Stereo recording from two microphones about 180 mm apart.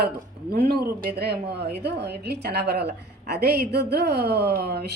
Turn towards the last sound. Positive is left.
turn(degrees=-65)  # may be behind; listen again after turning